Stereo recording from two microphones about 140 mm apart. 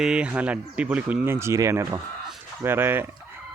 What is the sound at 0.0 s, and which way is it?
Speech, 5° right (ahead or behind).